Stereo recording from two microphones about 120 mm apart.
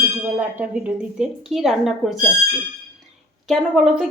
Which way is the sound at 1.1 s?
5° right (ahead or behind).